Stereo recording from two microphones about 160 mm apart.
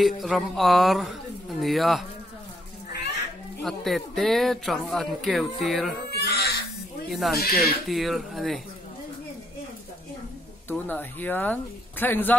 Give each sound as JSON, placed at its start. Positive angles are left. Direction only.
{"t": 0.0, "sound": "speech", "side_deg": 0}
{"t": 3.6, "sound": "speech", "side_deg": 0}
{"t": 6.1, "sound": "baby cry", "side_deg": 90}
{"t": 7.1, "sound": "speech", "side_deg": 0}
{"t": 10.7, "sound": "speech", "side_deg": 10}